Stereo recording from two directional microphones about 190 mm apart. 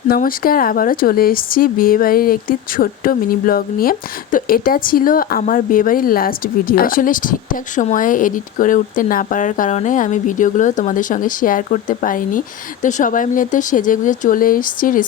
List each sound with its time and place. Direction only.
0.1 s speech: 50° left (ahead or behind)